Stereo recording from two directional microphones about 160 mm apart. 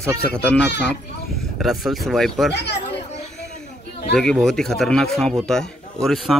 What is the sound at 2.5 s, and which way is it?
Speech, 90° left.